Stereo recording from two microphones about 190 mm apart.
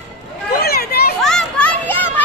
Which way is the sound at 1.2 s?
5° left (ahead or behind).